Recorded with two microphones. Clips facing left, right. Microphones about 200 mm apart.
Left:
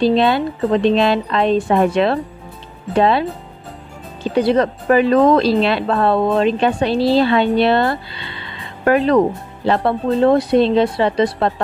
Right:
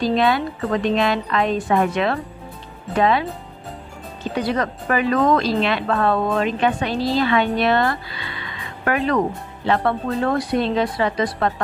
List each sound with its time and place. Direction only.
0.0 s a woman's voice: 30° left (ahead or behind)